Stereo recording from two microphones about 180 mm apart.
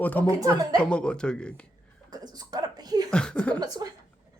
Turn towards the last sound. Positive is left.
turn(degrees=-20)  # may be behind; listen again after turning